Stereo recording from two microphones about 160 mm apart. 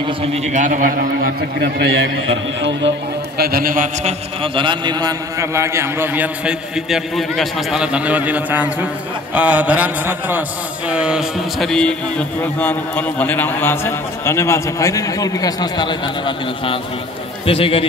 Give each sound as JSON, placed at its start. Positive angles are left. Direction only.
{"t": 0.2, "sound": "a man's voice", "side_deg": -40}
{"t": 3.3, "sound": "a man's voice", "side_deg": -70}
{"t": 4.4, "sound": "a man's voice", "side_deg": -30}
{"t": 10.9, "sound": "a sound", "side_deg": -5}
{"t": 12.4, "sound": "a man's voice", "side_deg": 10}